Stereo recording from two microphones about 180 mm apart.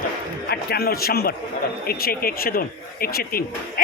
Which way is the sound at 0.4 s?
60° left (ahead or behind).